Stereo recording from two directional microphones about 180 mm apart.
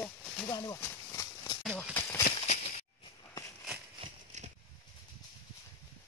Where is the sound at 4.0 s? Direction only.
40° right (ahead or behind).